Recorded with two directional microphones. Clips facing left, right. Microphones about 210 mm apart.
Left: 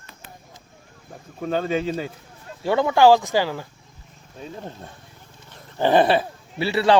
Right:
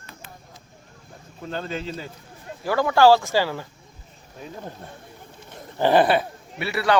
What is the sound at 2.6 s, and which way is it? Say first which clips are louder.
Speech: left 1 dB; 25° left (ahead or behind).